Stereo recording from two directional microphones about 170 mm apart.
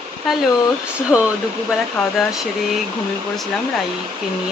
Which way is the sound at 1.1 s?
Centre (ahead or behind).